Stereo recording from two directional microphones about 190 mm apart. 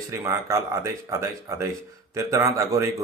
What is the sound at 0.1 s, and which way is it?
Speech, 15° right (ahead or behind).